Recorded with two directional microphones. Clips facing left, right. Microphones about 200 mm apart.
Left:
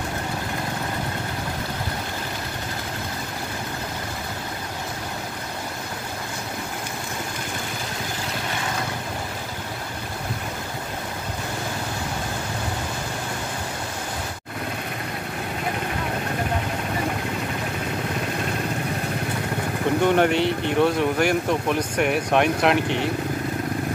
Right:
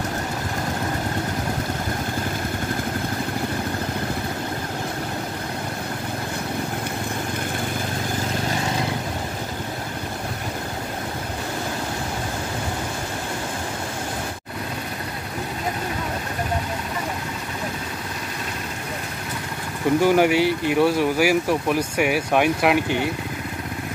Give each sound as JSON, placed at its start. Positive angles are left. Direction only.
{"t": 20.0, "sound": "speech", "side_deg": -5}